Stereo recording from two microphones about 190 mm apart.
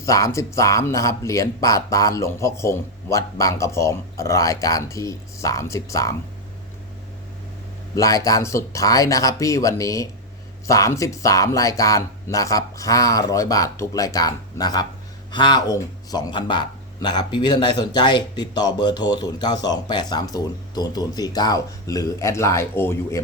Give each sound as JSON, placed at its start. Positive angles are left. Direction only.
{"t": 0.0, "sound": "speech", "side_deg": 15}
{"t": 7.9, "sound": "speech", "side_deg": 20}